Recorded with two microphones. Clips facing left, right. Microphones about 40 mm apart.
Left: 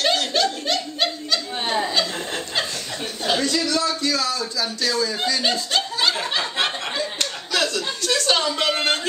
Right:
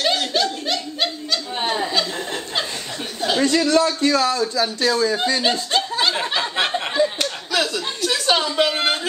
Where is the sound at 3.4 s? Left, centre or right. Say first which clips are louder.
Right 9 dB; right.